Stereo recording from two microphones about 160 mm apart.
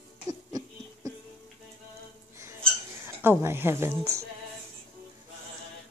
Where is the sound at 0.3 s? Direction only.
20° right (ahead or behind).